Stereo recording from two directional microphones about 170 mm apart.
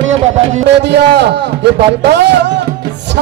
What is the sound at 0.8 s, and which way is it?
A man's voice, 85° right.